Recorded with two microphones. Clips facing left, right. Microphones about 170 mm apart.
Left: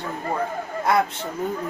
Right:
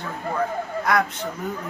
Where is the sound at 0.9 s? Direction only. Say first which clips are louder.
Left 2 dB; 25° left (ahead or behind).